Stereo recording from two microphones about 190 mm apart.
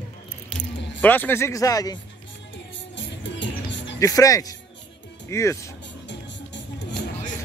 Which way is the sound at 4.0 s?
20° left (ahead or behind).